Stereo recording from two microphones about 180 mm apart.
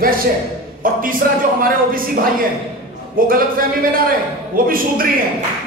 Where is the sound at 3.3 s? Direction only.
55° right (ahead or behind).